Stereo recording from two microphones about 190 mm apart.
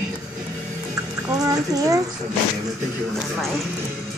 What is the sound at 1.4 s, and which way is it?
Speech, 20° right (ahead or behind).